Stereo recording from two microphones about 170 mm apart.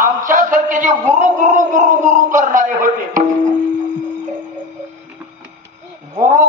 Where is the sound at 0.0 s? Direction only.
50° right (ahead or behind).